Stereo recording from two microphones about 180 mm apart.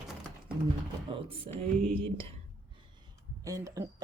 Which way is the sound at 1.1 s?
25° right (ahead or behind).